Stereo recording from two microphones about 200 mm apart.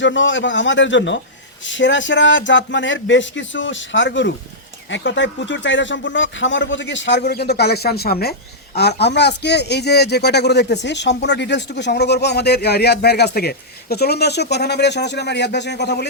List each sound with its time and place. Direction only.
0.0 s speech: 65° left (ahead or behind)